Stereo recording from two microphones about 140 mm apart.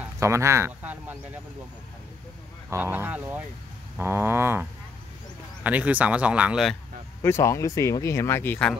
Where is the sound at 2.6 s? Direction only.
15° right (ahead or behind).